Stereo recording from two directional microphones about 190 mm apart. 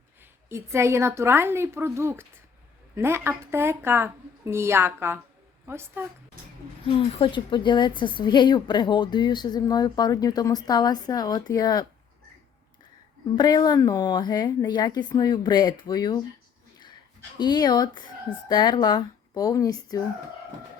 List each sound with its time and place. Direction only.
0.2 s a woman's voice: 15° right (ahead or behind)
6.8 s a woman's voice: 30° left (ahead or behind)
13.3 s a woman's voice: 20° left (ahead or behind)
17.3 s a woman's voice: 20° left (ahead or behind)